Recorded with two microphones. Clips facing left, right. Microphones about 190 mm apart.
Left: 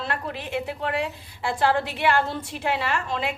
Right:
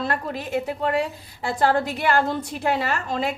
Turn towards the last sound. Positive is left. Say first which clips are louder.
# right 2 dB
turn(degrees=-40)  # may be behind; listen again after turning